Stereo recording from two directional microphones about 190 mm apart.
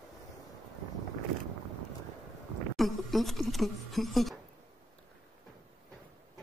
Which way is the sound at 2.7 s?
Centre (ahead or behind).